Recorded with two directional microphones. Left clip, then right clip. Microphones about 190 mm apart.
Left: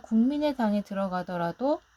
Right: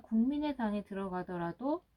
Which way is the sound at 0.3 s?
55° left (ahead or behind).